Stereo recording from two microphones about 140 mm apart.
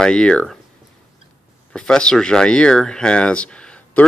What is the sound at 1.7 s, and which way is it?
Speech, 5° left (ahead or behind).